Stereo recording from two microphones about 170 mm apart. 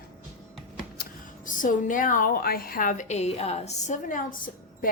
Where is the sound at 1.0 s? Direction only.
60° left (ahead or behind).